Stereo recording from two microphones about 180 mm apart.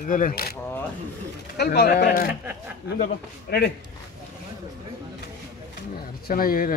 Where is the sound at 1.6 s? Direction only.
65° left (ahead or behind).